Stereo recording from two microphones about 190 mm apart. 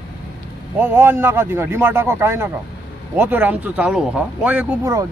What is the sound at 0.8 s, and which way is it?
Speech, 10° right (ahead or behind).